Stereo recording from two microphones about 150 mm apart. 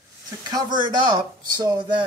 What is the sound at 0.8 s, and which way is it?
Speech, 30° right (ahead or behind).